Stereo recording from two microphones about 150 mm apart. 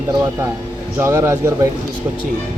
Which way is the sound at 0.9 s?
15° right (ahead or behind).